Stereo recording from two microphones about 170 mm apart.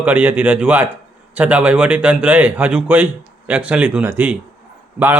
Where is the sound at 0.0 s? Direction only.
10° right (ahead or behind).